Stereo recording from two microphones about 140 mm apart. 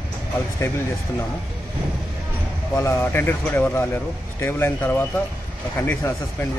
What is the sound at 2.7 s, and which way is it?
Speech, 15° left (ahead or behind).